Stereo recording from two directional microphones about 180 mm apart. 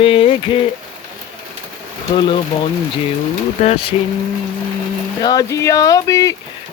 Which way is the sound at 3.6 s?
35° left (ahead or behind).